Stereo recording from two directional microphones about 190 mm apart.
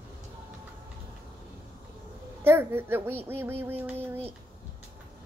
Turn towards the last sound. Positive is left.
turn(degrees=-10)  # may be behind; listen again after turning